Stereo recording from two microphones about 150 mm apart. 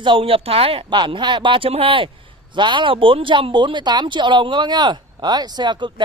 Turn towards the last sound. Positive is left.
turn(degrees=-30)  # may be behind; listen again after turning